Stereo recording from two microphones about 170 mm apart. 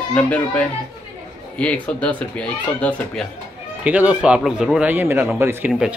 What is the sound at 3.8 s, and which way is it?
Speech, 10° right (ahead or behind).